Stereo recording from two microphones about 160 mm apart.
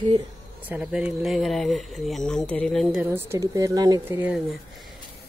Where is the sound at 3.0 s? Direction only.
15° right (ahead or behind).